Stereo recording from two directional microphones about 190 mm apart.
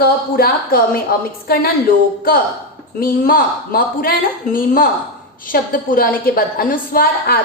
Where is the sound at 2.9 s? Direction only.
50° left (ahead or behind).